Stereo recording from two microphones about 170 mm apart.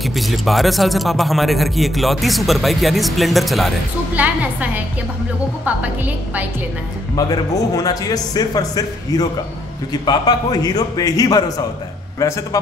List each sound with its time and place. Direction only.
0.0 s a woman's voice: centre (ahead or behind)
7.2 s a man's voice: 20° left (ahead or behind)